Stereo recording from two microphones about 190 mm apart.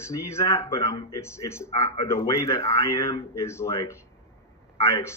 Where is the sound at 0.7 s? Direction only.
15° left (ahead or behind).